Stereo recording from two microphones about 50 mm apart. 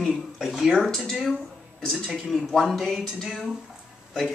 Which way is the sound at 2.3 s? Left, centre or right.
Centre.